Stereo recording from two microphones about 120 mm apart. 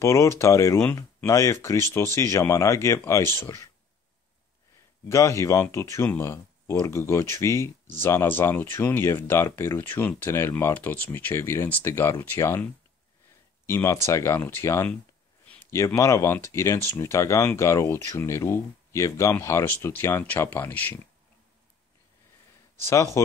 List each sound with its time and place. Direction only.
0.0 s speech: 25° left (ahead or behind)
5.0 s speech: 25° left (ahead or behind)
13.7 s speech: 20° left (ahead or behind)
15.4 s a sound: 10° left (ahead or behind)
15.7 s speech: 25° left (ahead or behind)
22.8 s speech: 25° left (ahead or behind)